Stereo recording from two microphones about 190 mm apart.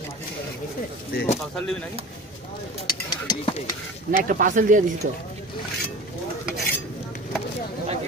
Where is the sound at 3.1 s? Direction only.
20° left (ahead or behind).